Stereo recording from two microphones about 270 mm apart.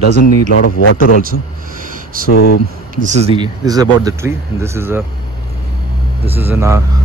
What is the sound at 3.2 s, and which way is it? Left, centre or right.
Speech, centre.